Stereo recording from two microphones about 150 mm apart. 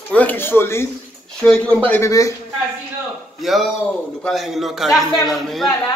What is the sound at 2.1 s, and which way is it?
Speech, 20° left (ahead or behind).